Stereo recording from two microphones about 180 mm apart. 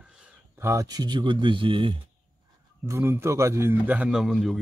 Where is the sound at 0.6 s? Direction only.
15° right (ahead or behind).